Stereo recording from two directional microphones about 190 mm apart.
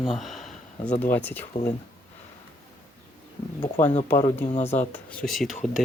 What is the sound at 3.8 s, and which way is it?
Speech, 10° left (ahead or behind).